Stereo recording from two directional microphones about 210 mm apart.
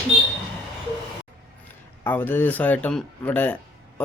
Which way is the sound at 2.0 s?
10° left (ahead or behind).